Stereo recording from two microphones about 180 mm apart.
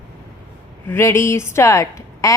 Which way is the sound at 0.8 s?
15° left (ahead or behind).